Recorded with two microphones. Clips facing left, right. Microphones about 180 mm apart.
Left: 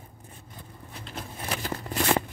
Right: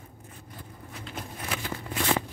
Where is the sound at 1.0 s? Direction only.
40° left (ahead or behind).